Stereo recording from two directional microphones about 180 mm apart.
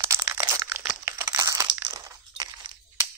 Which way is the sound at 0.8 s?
10° right (ahead or behind).